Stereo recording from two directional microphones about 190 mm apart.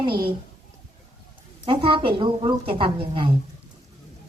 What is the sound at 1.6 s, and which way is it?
Speech, 25° right (ahead or behind).